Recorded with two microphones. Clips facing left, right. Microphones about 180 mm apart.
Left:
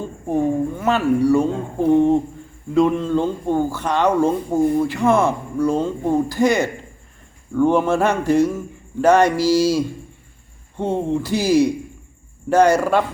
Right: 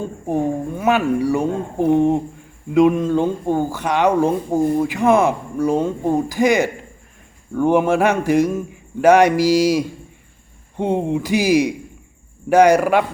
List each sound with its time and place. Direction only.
0.3 s speech: 15° right (ahead or behind)